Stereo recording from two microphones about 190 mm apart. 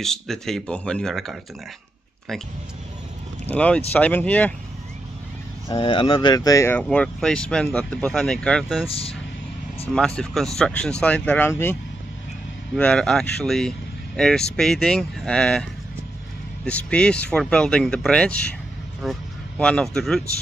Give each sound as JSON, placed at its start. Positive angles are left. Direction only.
{"t": 0.0, "sound": "speech", "side_deg": 0}
{"t": 3.4, "sound": "speech", "side_deg": 5}
{"t": 5.7, "sound": "speech", "side_deg": 25}
{"t": 8.8, "sound": "speech", "side_deg": 30}
{"t": 9.9, "sound": "speech", "side_deg": 5}
{"t": 12.7, "sound": "speech", "side_deg": 5}
{"t": 16.6, "sound": "speech", "side_deg": 5}